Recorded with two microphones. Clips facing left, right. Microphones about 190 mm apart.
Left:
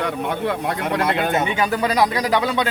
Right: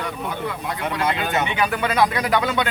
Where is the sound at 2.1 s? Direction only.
30° left (ahead or behind).